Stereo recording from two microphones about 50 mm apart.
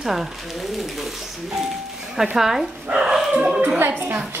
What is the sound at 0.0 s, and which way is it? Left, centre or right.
Speech, centre.